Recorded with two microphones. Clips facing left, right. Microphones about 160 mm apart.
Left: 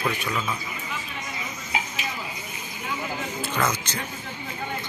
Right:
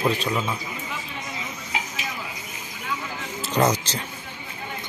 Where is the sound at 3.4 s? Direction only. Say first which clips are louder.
Right 6 dB; 35° right (ahead or behind).